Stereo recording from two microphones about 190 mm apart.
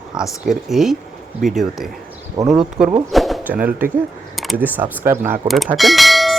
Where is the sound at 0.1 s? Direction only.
5° right (ahead or behind).